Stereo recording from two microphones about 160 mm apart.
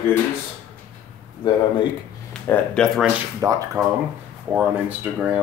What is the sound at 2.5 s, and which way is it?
Speech, 5° left (ahead or behind).